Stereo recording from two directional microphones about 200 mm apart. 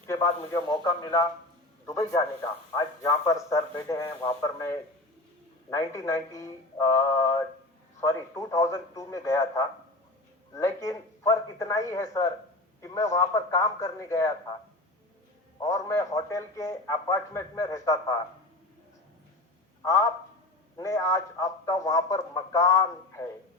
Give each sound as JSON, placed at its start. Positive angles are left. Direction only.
{"t": 0.1, "sound": "a man's voice", "side_deg": 15}
{"t": 15.6, "sound": "a man's voice", "side_deg": 15}
{"t": 19.8, "sound": "a man's voice", "side_deg": 15}